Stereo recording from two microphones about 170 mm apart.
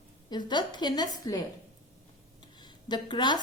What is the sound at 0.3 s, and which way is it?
A woman's voice, 25° left (ahead or behind).